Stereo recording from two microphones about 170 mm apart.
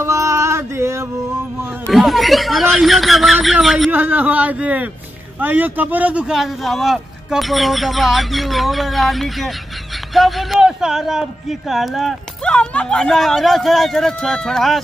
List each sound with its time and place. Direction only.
0.0 s music: 15° right (ahead or behind)
1.9 s a man's voice: centre (ahead or behind)